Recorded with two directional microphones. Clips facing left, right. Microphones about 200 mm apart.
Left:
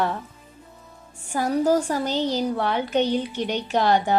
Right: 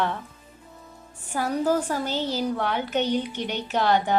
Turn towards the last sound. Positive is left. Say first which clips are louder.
# left 2 dB
turn(degrees=10)  # may be behind; listen again after turning